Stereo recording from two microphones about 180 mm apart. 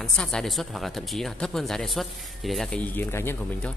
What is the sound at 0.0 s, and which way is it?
Speech, 5° left (ahead or behind).